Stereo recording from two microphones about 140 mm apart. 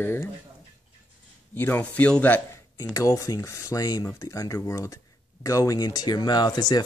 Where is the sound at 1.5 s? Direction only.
15° left (ahead or behind).